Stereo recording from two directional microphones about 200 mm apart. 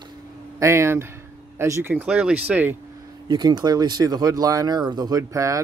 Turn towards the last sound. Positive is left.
turn(degrees=-15)  # may be behind; listen again after turning